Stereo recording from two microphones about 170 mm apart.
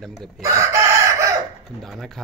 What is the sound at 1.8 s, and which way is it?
Speech, centre (ahead or behind).